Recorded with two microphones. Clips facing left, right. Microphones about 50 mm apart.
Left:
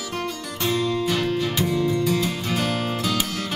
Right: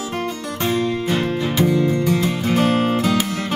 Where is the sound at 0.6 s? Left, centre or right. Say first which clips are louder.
Right 2 dB; right.